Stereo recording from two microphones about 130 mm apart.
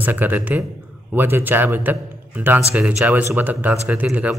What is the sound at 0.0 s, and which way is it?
A man's voice, 15° right (ahead or behind).